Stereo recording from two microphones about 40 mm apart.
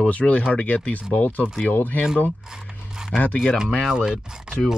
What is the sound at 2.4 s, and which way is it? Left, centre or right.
Mechanisms, centre.